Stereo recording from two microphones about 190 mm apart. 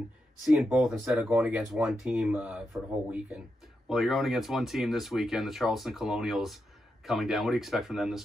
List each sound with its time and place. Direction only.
0.5 s speech: 5° right (ahead or behind)